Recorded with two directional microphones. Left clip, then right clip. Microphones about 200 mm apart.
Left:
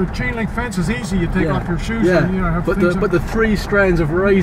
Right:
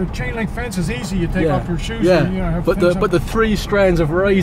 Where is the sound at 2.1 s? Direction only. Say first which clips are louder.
Right 1 dB; 15° right (ahead or behind).